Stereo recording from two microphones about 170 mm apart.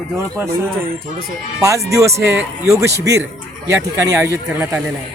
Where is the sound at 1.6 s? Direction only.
20° right (ahead or behind).